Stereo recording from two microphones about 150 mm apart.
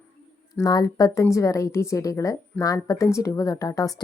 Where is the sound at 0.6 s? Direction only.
25° left (ahead or behind).